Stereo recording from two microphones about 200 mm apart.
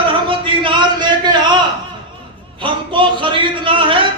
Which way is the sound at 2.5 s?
25° right (ahead or behind).